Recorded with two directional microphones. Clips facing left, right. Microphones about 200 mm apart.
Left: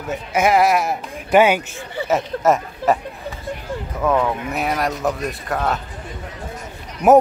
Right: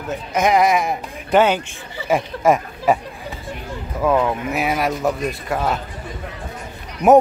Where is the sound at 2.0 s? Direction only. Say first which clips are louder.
Right 1 dB; 10° right (ahead or behind).